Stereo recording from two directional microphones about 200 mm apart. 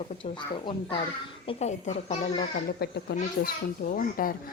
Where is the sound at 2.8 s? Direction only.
50° left (ahead or behind).